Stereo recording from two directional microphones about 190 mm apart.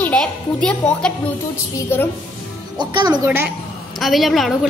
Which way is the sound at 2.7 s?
25° right (ahead or behind).